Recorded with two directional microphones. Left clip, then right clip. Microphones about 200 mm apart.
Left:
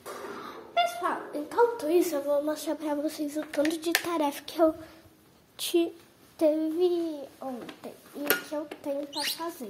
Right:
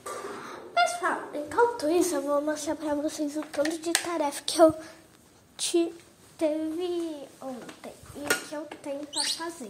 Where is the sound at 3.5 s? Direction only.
20° left (ahead or behind).